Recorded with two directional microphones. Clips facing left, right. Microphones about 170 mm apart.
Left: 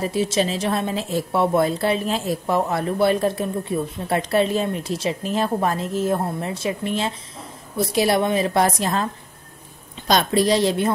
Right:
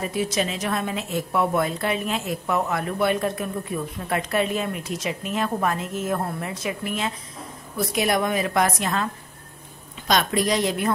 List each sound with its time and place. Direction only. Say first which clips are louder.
0.0 s a woman's voice: left 4 dB; 30° left (ahead or behind)